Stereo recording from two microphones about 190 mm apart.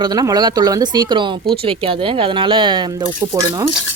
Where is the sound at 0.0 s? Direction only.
20° right (ahead or behind).